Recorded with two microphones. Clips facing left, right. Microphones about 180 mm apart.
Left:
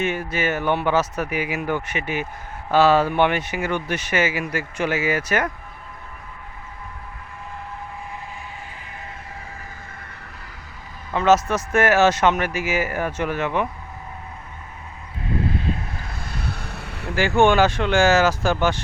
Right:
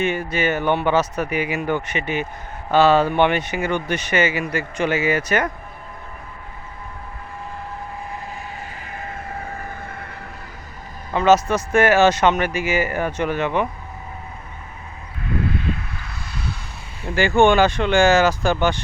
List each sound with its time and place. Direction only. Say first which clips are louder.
0.0 s speech: right 2 dB; 5° left (ahead or behind)
8.9 s a sound: right 6 dB; 50° right (ahead or behind)
11.1 s speech: right 2 dB; centre (ahead or behind)
15.4 s vehicle: even; 35° left (ahead or behind)
16.0 s vehicle: right 2 dB; 50° left (ahead or behind)
17.2 s speech: right 2 dB; 5° left (ahead or behind)